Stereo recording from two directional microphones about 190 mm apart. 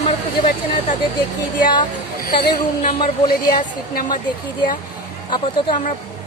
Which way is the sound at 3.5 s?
50° left (ahead or behind).